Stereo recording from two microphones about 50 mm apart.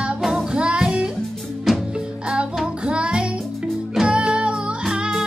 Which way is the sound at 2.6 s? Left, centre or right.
Centre.